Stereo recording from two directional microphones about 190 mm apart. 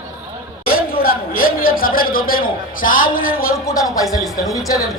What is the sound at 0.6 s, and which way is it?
Speech, 50° left (ahead or behind).